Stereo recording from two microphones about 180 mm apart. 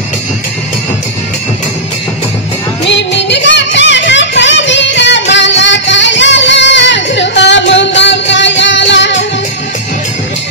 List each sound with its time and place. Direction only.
2.9 s music: 80° left